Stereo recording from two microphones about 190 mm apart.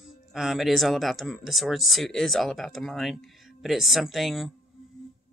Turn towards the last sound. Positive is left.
turn(degrees=0)  # may be behind; listen again after turning